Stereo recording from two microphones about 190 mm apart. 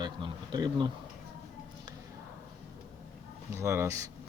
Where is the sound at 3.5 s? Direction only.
15° right (ahead or behind).